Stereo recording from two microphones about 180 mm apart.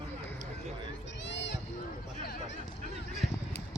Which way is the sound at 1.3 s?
80° left.